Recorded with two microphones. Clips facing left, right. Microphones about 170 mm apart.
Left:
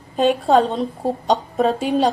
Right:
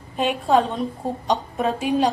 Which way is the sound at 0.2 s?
35° left (ahead or behind).